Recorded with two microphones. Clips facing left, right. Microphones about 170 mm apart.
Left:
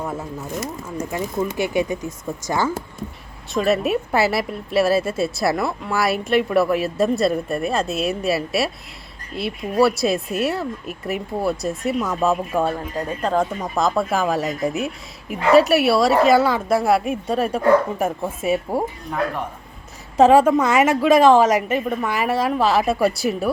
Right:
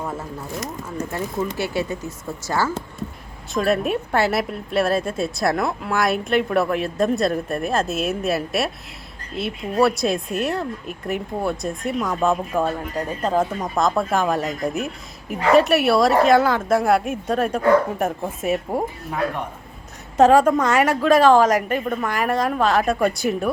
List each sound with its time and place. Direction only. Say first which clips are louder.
1.1 s speech: left 2 dB; 10° left (ahead or behind)
3.5 s a woman's voice: left 1 dB; centre (ahead or behind)
20.1 s a woman's voice: left 1 dB; 5° left (ahead or behind)